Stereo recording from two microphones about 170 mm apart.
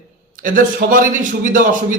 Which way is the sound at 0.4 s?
55° right (ahead or behind).